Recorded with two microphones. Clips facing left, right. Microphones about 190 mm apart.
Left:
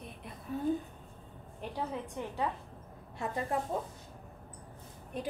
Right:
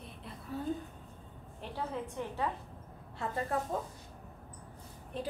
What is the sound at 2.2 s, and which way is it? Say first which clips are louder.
Speech: even; 15° left (ahead or behind).